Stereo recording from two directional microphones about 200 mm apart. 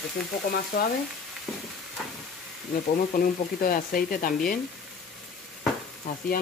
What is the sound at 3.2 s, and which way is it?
Speech, 45° left (ahead or behind).